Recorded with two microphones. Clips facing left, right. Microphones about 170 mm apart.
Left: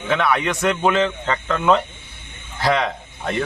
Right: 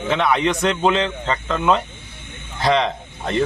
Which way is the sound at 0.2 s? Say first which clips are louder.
Right 2 dB; 20° right (ahead or behind).